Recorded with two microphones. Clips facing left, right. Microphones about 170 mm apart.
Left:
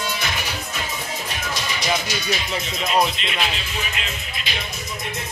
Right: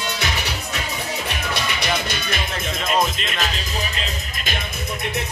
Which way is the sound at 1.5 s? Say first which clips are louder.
Even; 60° right (ahead or behind).